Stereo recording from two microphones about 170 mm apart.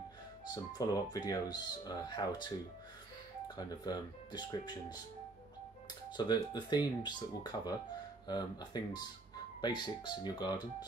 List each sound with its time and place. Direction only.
0.5 s speech: 25° left (ahead or behind)
6.0 s speech: 25° left (ahead or behind)